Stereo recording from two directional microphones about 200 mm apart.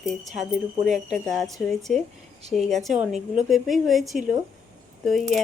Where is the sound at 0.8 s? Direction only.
Centre (ahead or behind).